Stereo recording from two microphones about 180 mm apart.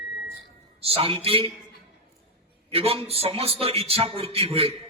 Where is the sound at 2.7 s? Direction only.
30° right (ahead or behind).